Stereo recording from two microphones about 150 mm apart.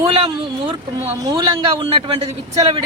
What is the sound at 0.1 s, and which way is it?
Speech, 35° right (ahead or behind).